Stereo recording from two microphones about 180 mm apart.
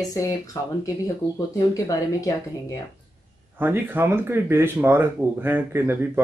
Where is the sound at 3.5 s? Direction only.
10° right (ahead or behind).